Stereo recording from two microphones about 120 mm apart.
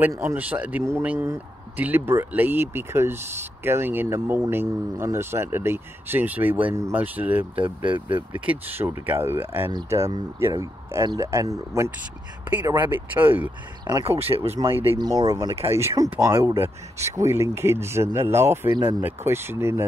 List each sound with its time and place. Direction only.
0.2 s speech: 15° right (ahead or behind)
14.0 s speech: 55° right (ahead or behind)
15.0 s speech: 35° right (ahead or behind)
15.7 s speech: 25° right (ahead or behind)